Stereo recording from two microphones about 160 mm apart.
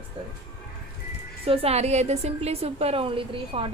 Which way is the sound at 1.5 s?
40° right (ahead or behind).